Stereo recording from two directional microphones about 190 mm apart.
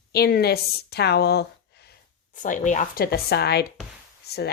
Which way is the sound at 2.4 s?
40° left (ahead or behind).